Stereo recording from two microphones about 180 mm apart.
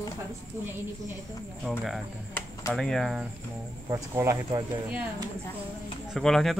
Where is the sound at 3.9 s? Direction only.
20° right (ahead or behind).